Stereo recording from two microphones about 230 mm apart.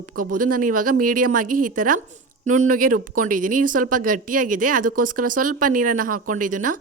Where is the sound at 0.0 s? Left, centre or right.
Right.